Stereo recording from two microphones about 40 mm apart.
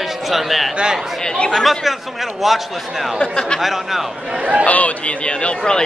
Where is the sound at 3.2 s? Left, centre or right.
Left.